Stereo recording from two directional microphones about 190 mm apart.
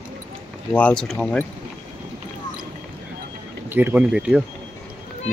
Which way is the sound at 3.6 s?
10° right (ahead or behind).